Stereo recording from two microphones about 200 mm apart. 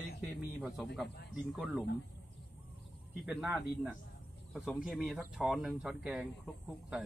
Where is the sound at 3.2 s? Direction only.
5° right (ahead or behind).